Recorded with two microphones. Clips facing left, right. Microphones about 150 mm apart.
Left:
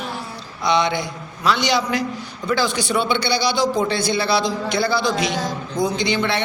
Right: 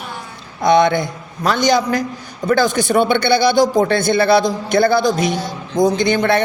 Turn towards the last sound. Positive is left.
turn(degrees=-50)  # may be behind; listen again after turning